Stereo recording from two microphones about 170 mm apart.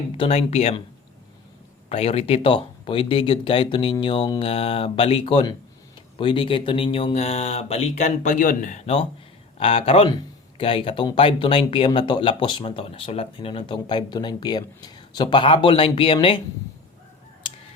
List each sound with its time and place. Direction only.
0.2 s speech: 35° left (ahead or behind)
1.9 s speech: 35° left (ahead or behind)